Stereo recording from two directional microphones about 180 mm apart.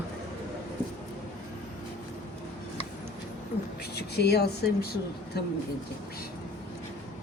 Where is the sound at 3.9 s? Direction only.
65° left (ahead or behind).